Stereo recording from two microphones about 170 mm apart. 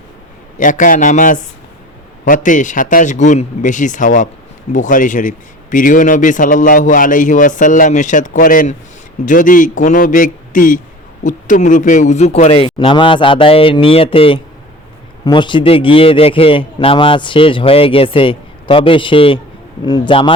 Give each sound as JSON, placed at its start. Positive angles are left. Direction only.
{"t": 0.6, "sound": "a man's voice", "side_deg": 50}